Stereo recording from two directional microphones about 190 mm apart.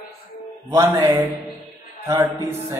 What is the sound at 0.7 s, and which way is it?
Speech, 15° right (ahead or behind).